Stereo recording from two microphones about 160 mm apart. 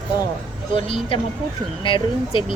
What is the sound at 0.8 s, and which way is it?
Speech, 35° left (ahead or behind).